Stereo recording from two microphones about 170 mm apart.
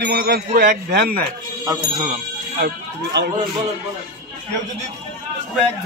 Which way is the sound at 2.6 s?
75° right (ahead or behind).